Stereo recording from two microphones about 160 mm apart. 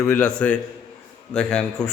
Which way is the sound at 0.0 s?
5° left (ahead or behind).